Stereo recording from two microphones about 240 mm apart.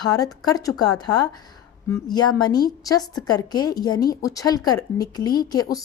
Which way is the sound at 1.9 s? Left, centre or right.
Centre.